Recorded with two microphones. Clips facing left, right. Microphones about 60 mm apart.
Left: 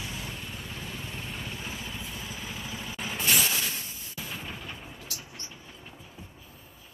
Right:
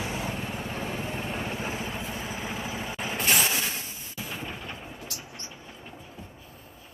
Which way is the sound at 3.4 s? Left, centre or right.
Right.